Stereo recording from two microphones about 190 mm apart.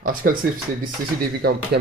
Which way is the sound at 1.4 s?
60° right (ahead or behind).